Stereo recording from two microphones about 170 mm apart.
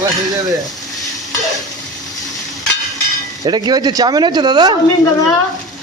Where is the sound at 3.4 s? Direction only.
25° right (ahead or behind).